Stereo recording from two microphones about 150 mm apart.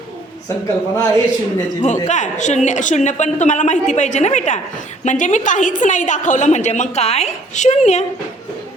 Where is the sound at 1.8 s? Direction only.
55° left (ahead or behind).